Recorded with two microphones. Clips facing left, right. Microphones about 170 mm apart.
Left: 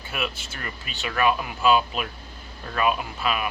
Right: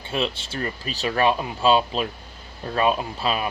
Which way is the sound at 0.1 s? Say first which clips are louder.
Right 5 dB; 30° right (ahead or behind).